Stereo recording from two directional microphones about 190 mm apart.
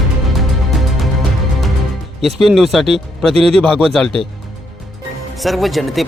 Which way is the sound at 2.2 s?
Centre (ahead or behind).